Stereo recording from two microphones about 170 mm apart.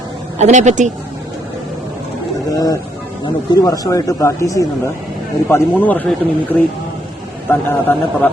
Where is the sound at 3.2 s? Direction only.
20° left (ahead or behind).